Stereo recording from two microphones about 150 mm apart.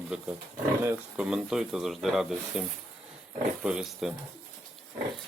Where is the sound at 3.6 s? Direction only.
5° right (ahead or behind).